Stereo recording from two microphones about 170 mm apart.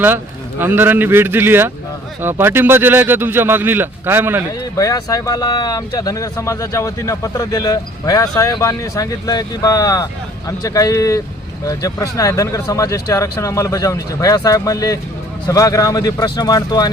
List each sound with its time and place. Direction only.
0.6 s speech: 10° right (ahead or behind)
4.8 s speech: 20° left (ahead or behind)